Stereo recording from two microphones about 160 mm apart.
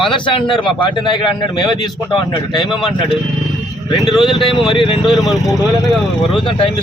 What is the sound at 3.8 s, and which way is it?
Speech, 30° left (ahead or behind).